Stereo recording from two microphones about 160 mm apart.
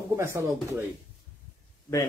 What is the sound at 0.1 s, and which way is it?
Speech, 15° right (ahead or behind).